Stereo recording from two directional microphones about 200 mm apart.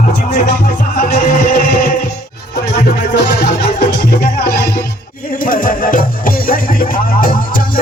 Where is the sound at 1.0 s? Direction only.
45° left (ahead or behind).